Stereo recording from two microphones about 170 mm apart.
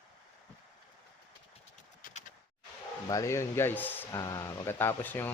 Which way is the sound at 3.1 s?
20° left (ahead or behind).